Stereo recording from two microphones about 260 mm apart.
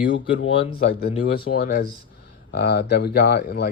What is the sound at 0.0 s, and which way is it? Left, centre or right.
Speech, left.